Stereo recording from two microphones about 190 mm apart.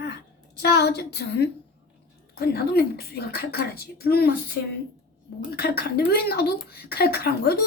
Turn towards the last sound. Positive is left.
turn(degrees=55)  # may be behind; listen again after turning